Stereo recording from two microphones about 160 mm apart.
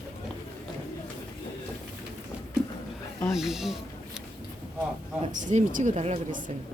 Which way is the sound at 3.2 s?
Centre (ahead or behind).